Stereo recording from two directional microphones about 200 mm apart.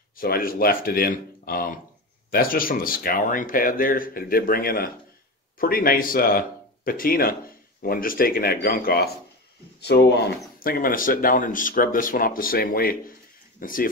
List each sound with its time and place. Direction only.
0.1 s speech: 45° left (ahead or behind)